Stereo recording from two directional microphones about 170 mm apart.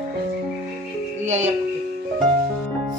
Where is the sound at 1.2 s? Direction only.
45° right (ahead or behind).